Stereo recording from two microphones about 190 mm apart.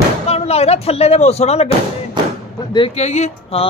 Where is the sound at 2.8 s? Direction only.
35° left (ahead or behind).